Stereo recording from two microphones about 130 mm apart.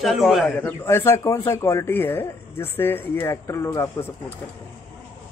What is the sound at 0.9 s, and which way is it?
Speech, 20° left (ahead or behind).